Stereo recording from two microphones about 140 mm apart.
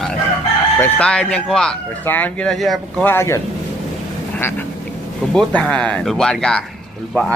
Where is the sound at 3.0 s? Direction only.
15° left (ahead or behind).